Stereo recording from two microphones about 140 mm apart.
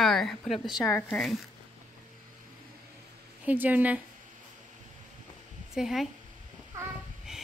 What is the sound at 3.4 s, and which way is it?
Speech, 10° right (ahead or behind).